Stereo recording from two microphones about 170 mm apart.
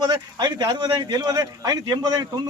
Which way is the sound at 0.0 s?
25° right (ahead or behind).